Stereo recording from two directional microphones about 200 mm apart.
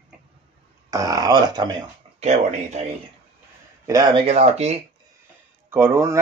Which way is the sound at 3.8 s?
20° right (ahead or behind).